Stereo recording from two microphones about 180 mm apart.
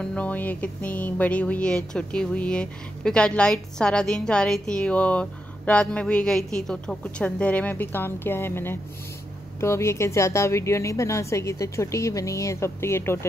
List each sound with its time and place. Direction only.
0.0 s music: 5° left (ahead or behind)